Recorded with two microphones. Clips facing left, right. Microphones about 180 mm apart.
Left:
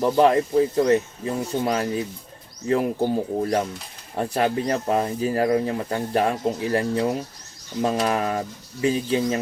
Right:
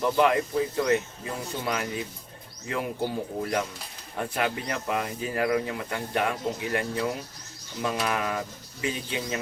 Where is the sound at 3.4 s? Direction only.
35° left (ahead or behind).